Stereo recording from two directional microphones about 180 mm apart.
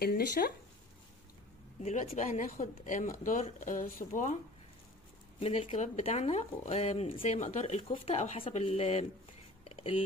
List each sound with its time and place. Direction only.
0.0 s speech: 60° left (ahead or behind)
1.8 s a woman's voice: 35° left (ahead or behind)
5.4 s speech: 35° left (ahead or behind)
9.7 s a sound: 30° left (ahead or behind)